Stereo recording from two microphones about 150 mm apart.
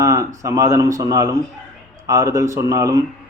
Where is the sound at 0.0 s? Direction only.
20° right (ahead or behind).